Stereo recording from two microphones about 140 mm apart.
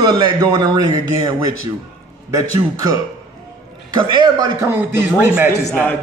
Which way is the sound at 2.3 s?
25° right (ahead or behind).